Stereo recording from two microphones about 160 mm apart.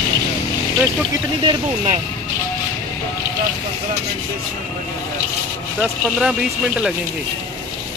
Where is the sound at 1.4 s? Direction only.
30° right (ahead or behind).